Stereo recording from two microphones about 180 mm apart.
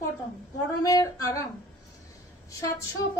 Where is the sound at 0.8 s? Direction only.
20° left (ahead or behind).